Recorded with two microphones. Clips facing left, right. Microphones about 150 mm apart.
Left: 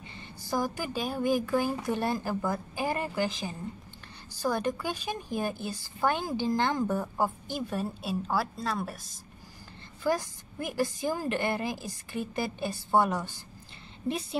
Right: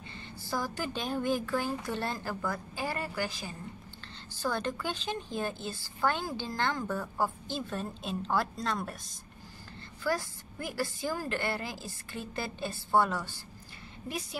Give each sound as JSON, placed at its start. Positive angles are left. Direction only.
{"t": 0.1, "sound": "a woman's voice", "side_deg": 15}
{"t": 10.0, "sound": "a woman's voice", "side_deg": 20}